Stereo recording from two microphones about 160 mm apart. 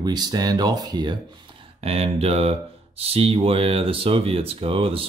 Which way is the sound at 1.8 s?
35° right (ahead or behind).